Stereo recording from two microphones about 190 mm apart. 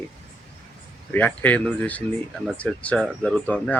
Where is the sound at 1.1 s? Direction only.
10° left (ahead or behind).